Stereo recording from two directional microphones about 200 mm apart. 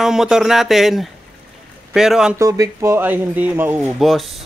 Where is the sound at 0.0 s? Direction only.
Centre (ahead or behind).